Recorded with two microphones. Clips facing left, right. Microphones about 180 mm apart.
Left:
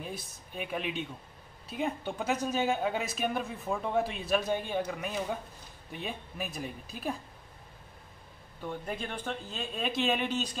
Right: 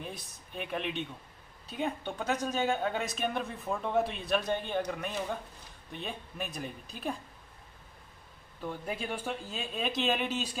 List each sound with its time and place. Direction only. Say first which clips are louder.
0.0 s speech: left 2 dB; centre (ahead or behind)
8.5 s speech: even; 5° right (ahead or behind)